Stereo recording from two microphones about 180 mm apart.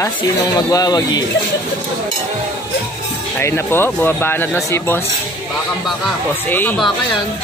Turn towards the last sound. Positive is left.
turn(degrees=10)  # may be behind; listen again after turning